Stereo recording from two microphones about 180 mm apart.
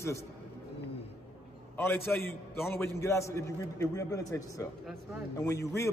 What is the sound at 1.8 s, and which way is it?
A man's voice, 10° left (ahead or behind).